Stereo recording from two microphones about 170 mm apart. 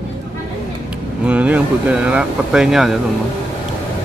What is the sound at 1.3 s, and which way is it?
Speech, 10° right (ahead or behind).